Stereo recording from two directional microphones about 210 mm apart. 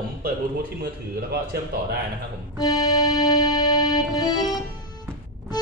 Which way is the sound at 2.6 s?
20° left (ahead or behind).